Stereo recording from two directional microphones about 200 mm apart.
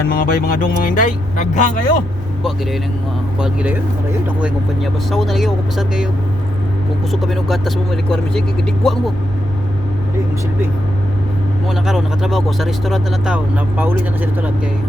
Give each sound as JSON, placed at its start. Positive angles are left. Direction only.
{"t": 0.1, "sound": "speech", "side_deg": 45}
{"t": 3.4, "sound": "speech", "side_deg": -5}
{"t": 7.1, "sound": "speech", "side_deg": 0}
{"t": 11.7, "sound": "speech", "side_deg": 0}